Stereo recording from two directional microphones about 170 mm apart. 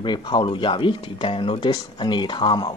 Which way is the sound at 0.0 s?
25° left (ahead or behind).